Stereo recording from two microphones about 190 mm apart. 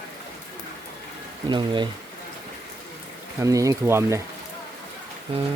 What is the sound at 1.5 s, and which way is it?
Speech, 25° right (ahead or behind).